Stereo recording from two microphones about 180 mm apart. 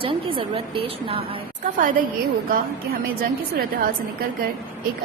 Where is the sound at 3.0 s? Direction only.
55° right (ahead or behind).